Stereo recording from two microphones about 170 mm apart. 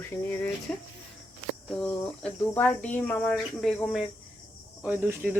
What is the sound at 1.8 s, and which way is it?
Speech, 5° left (ahead or behind).